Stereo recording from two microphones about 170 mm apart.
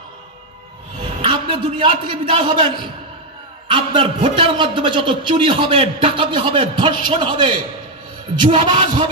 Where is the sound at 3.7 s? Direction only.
30° right (ahead or behind).